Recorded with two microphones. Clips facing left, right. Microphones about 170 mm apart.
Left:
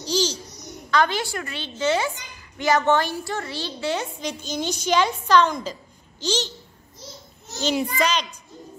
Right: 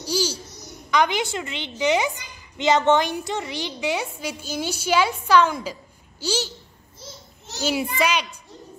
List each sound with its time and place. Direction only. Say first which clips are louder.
0.0 s babbling: left 1 dB; 10° right (ahead or behind)
0.8 s a woman's voice: right 1 dB; 15° right (ahead or behind)
7.6 s a woman's voice: even; 5° right (ahead or behind)